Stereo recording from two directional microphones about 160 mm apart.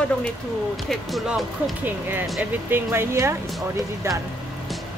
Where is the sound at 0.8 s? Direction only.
Centre (ahead or behind).